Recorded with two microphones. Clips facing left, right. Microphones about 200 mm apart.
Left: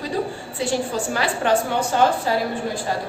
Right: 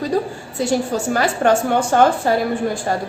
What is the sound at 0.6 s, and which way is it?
A woman's voice, 40° right (ahead or behind).